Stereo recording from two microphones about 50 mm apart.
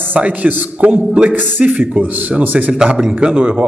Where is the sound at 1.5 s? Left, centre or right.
Right.